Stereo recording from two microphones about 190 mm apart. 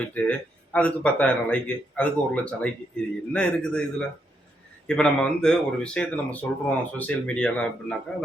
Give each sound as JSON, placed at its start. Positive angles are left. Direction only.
{"t": 0.1, "sound": "speech", "side_deg": 5}